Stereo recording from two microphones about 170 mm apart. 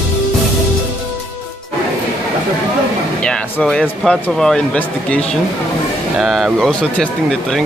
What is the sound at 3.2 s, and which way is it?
Speech, 5° left (ahead or behind).